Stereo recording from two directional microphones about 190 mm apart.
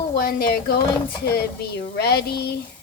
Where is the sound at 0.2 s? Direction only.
50° left (ahead or behind).